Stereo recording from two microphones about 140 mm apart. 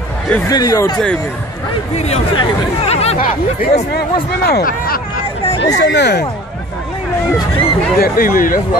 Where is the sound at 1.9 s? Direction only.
50° left (ahead or behind).